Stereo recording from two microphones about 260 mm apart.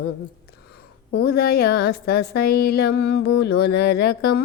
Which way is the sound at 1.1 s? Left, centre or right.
Left.